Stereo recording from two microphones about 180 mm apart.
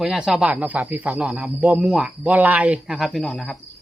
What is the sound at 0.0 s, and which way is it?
Speech, 5° right (ahead or behind).